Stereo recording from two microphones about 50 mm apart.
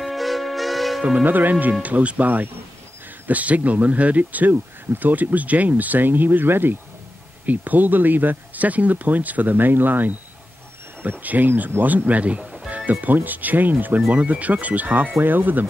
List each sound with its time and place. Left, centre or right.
0.0 s music: centre
1.2 s speech: right
12.4 s music: centre
12.7 s speech: right